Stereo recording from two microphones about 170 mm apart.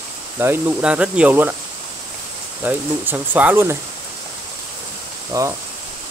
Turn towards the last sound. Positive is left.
turn(degrees=-20)  # may be behind; listen again after turning